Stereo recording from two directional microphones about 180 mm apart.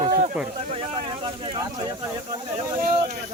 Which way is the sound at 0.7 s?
30° right (ahead or behind).